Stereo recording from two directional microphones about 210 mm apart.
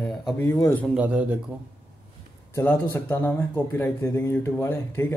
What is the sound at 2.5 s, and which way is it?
Speech, 10° left (ahead or behind).